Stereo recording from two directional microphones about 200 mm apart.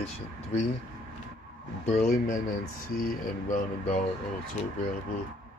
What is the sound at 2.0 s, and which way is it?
Speech, 50° left (ahead or behind).